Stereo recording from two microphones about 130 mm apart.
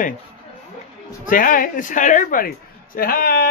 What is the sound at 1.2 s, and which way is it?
A woman's voice, 90° left.